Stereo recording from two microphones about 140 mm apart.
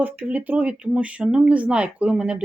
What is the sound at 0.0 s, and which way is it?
Speech, 10° right (ahead or behind).